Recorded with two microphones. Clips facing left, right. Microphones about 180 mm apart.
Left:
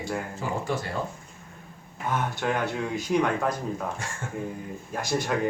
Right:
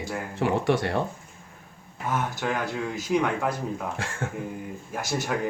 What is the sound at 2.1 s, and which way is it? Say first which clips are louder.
Speech: even; centre (ahead or behind).